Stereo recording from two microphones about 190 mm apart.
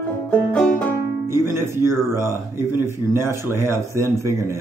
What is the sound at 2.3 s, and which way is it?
Speech, 15° right (ahead or behind).